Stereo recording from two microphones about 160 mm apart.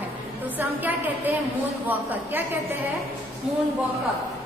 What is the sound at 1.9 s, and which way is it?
Female singing, 10° right (ahead or behind).